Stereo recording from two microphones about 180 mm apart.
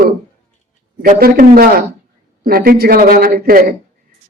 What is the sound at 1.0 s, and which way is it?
Speech, 55° right (ahead or behind).